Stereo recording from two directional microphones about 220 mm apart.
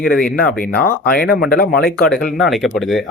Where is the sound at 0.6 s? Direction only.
40° left (ahead or behind).